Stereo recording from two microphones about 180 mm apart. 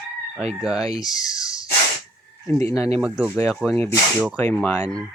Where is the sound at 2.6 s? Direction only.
15° left (ahead or behind).